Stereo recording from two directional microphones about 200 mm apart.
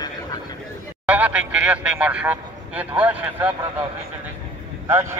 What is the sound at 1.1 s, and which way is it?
A man's voice, 5° right (ahead or behind).